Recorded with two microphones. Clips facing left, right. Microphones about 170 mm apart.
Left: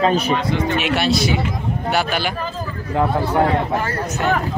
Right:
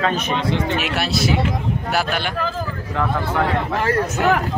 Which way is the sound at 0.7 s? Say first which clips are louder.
Left 3 dB; centre (ahead or behind).